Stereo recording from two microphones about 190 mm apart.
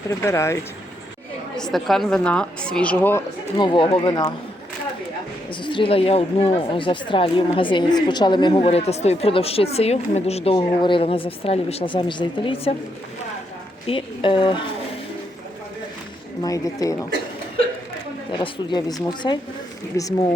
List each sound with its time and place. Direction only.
0.1 s speech: 15° left (ahead or behind)
1.5 s a woman's voice: centre (ahead or behind)
3.6 s speech: 25° left (ahead or behind)
5.5 s speech: 25° left (ahead or behind)
13.8 s speech: 25° left (ahead or behind)
16.4 s speech: 20° left (ahead or behind)
18.3 s speech: 25° left (ahead or behind)